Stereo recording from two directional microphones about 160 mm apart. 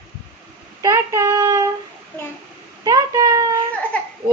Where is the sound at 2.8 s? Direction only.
25° right (ahead or behind).